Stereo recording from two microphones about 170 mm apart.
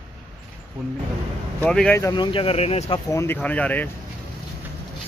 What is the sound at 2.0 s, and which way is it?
Speech, 20° left (ahead or behind).